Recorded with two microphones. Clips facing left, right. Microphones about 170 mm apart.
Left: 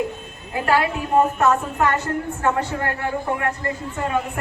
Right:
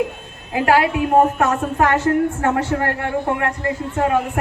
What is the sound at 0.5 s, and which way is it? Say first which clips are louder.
Speech: right 4 dB; 75° right (ahead or behind).